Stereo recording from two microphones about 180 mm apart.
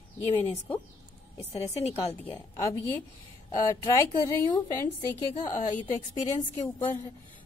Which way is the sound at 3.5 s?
20° left (ahead or behind).